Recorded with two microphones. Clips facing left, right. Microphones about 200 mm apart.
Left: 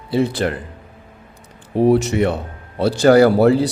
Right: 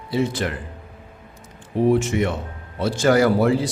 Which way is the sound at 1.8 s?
35° left (ahead or behind).